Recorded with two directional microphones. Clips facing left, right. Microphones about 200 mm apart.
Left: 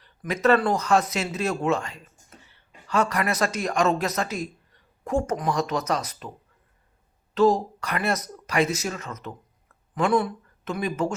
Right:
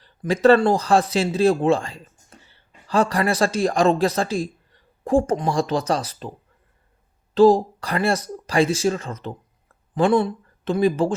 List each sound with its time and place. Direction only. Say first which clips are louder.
0.0 s speech: right 6 dB; 30° right (ahead or behind)
7.3 s speech: right 6 dB; 30° right (ahead or behind)